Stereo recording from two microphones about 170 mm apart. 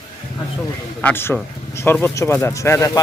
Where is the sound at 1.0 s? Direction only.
10° left (ahead or behind).